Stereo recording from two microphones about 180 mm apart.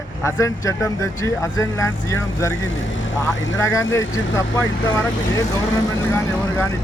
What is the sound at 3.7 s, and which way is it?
Speech, 15° left (ahead or behind).